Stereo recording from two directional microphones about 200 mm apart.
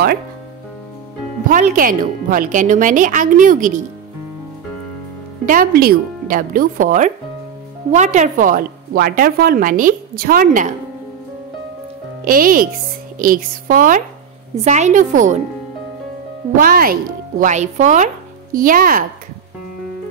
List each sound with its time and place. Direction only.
1.5 s speech: 45° right (ahead or behind)
5.4 s a woman's voice: 45° right (ahead or behind)
12.3 s a woman's voice: 45° right (ahead or behind)
16.5 s speech: 45° right (ahead or behind)